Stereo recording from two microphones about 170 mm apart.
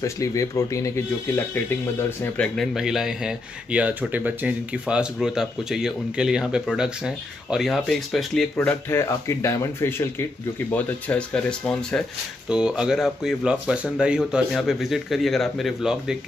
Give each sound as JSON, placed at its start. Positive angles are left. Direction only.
{"t": 0.0, "sound": "speech", "side_deg": 20}
{"t": 8.5, "sound": "speech", "side_deg": 15}
{"t": 12.4, "sound": "speech", "side_deg": -5}